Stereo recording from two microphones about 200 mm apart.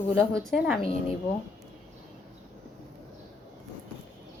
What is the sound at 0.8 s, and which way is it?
Speech, 30° left (ahead or behind).